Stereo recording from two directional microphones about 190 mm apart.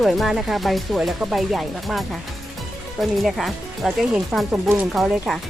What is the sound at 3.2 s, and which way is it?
Speech, centre (ahead or behind).